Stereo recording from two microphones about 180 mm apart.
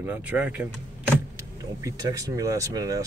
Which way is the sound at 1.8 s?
20° right (ahead or behind).